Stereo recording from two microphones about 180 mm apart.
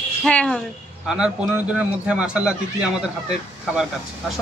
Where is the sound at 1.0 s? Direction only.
5° right (ahead or behind).